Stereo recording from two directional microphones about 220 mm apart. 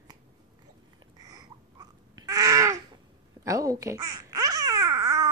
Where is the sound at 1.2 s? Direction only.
15° right (ahead or behind).